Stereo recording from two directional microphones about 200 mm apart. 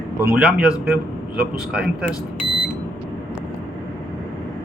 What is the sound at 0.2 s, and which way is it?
Speech, 10° right (ahead or behind).